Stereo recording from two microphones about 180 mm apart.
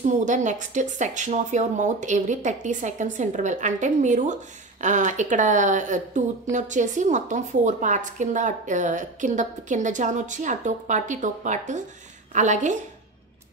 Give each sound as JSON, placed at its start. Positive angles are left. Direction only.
{"t": 0.2, "sound": "speech", "side_deg": -45}